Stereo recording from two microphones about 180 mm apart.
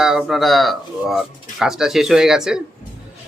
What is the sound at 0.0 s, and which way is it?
Speech, 5° right (ahead or behind).